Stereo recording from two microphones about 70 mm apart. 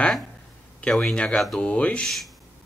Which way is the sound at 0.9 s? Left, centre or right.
Centre.